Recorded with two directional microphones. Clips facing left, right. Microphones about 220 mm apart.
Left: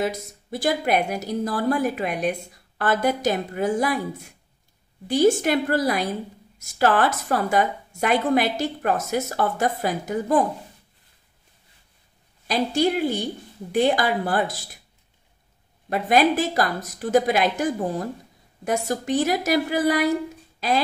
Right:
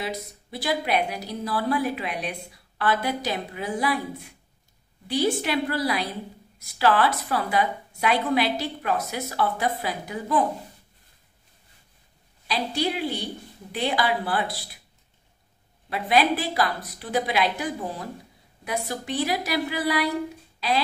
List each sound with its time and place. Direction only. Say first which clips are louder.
0.0 s a woman's voice: left 6 dB; 45° left (ahead or behind)
12.4 s a woman's voice: left 5 dB; 45° left (ahead or behind)
15.9 s a woman's voice: left 3 dB; 45° left (ahead or behind)